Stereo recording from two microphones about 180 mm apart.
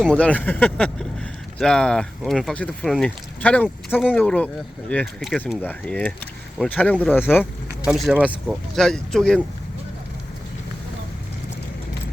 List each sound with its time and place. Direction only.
0.1 s speech: 10° left (ahead or behind)
7.9 s speech: 5° right (ahead or behind)